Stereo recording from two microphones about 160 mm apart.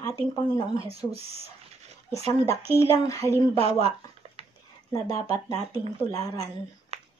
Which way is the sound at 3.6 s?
40° right (ahead or behind).